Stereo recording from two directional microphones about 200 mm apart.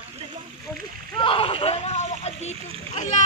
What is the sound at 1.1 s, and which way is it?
Splash, 25° left (ahead or behind).